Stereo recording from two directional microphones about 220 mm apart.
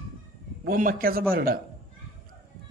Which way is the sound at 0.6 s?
40° right (ahead or behind).